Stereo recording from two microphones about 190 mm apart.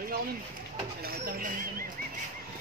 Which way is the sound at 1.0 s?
50° right (ahead or behind).